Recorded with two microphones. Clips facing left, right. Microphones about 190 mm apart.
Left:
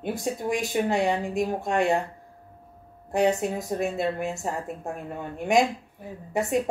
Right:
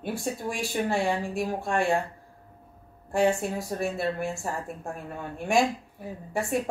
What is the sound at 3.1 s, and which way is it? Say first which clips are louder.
A woman's voice: left 1 dB; 20° left (ahead or behind).